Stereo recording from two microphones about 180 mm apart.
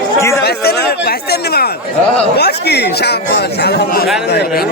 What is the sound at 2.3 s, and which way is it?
Speech, 65° left (ahead or behind).